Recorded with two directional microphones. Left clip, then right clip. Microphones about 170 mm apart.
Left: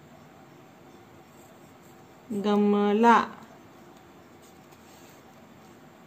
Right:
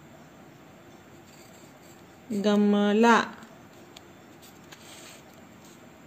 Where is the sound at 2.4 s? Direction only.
15° right (ahead or behind).